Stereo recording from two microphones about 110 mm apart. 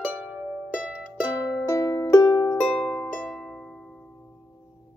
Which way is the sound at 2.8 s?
10° left (ahead or behind).